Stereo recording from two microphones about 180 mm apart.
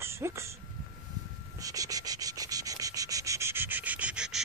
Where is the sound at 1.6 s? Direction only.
20° right (ahead or behind).